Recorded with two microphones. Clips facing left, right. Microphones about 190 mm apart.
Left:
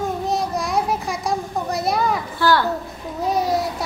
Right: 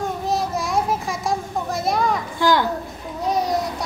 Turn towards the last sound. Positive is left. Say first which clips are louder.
# left 1 dB
turn(degrees=0)  # may be behind; listen again after turning